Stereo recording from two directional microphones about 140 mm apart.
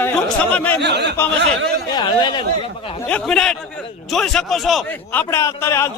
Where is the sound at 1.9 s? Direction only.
30° left (ahead or behind).